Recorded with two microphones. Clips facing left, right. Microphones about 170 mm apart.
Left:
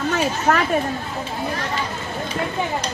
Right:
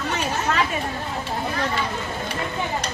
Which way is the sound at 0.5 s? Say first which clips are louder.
Left 5 dB; 50° left (ahead or behind).